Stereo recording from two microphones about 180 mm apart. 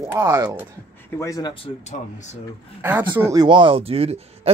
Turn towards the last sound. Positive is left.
turn(degrees=-35)  # may be behind; listen again after turning